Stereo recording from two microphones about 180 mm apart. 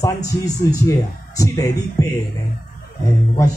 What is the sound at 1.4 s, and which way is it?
Speech, 20° left (ahead or behind).